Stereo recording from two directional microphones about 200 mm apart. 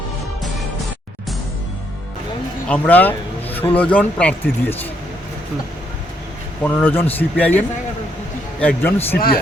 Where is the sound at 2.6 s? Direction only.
10° left (ahead or behind).